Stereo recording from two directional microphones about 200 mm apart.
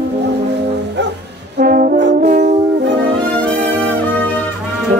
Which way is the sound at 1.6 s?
45° right (ahead or behind).